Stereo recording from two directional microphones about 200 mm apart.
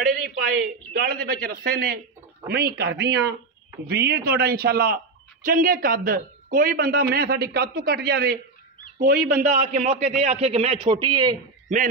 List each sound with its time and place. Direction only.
0.9 s a man's voice: 50° right (ahead or behind); by 11.3 s 20° right (ahead or behind)